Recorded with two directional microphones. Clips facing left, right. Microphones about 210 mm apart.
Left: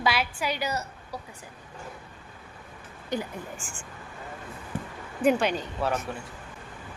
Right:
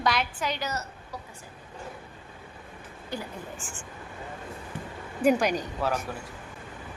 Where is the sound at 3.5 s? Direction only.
Centre (ahead or behind).